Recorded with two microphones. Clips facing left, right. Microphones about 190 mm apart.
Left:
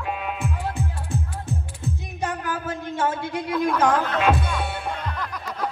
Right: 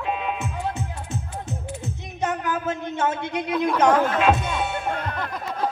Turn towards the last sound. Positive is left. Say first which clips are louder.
# right 3 dB
turn(degrees=-25)  # may be behind; listen again after turning